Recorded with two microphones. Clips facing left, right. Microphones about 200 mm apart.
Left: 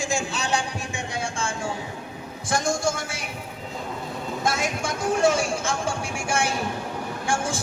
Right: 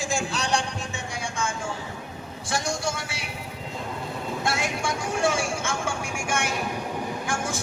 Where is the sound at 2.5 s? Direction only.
50° left (ahead or behind).